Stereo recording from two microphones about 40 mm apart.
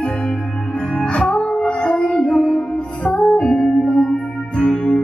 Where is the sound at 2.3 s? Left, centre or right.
Centre.